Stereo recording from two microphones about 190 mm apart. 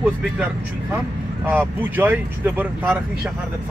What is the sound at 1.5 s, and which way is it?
Speech, 10° right (ahead or behind).